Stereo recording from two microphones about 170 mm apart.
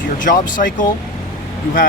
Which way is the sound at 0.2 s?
50° left (ahead or behind).